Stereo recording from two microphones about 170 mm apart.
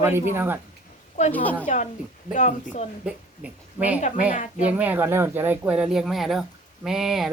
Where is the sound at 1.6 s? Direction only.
45° left (ahead or behind).